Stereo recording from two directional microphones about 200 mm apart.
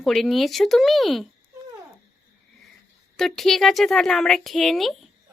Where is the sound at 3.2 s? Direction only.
Centre (ahead or behind).